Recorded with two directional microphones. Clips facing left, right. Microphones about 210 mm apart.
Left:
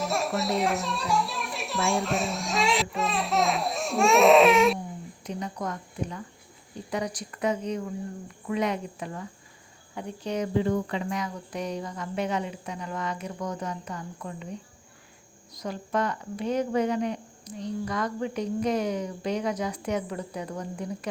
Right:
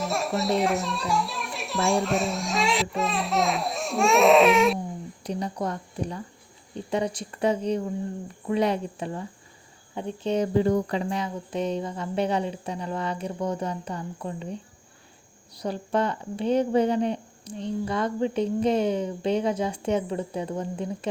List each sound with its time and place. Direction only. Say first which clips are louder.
0.0 s speech: right 1 dB; centre (ahead or behind)
5.2 s speech: right 4 dB; 35° right (ahead or behind)